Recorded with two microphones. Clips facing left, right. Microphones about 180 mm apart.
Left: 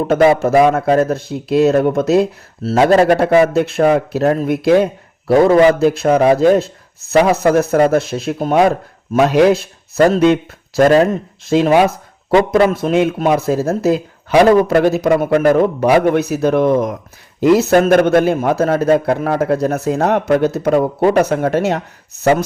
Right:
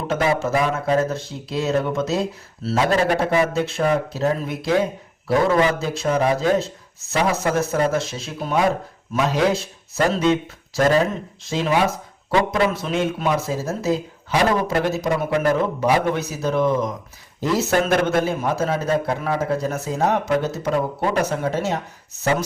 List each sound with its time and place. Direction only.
0.1 s speech: 60° left (ahead or behind)
9.1 s speech: 65° left (ahead or behind)